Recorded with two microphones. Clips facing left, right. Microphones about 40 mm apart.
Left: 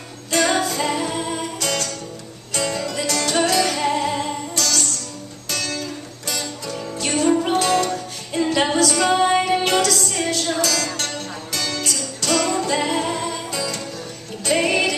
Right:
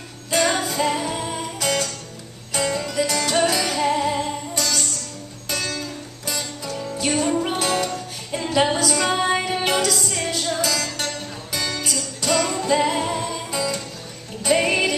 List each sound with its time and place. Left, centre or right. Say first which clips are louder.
0.6 s music: left 1 dB; centre
4.6 s music: left 2 dB; centre
8.3 s a capella: left 1 dB; centre
9.0 s music: left 4 dB; centre